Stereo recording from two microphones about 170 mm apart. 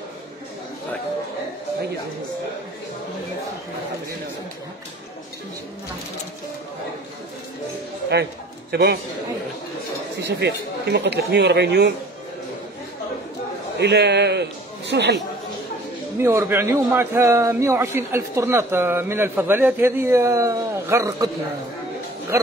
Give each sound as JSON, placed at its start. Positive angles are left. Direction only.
{"t": 8.7, "sound": "a man's voice", "side_deg": -65}
{"t": 10.2, "sound": "speech", "side_deg": -90}
{"t": 13.7, "sound": "a man's voice", "side_deg": -80}
{"t": 16.2, "sound": "a man's voice", "side_deg": -15}
{"t": 22.3, "sound": "speech", "side_deg": -15}